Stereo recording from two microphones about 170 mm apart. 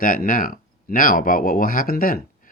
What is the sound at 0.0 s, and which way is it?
Speech, 55° left (ahead or behind).